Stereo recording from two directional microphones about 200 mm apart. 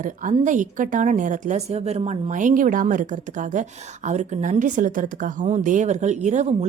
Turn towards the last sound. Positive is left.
turn(degrees=-35)  # may be behind; listen again after turning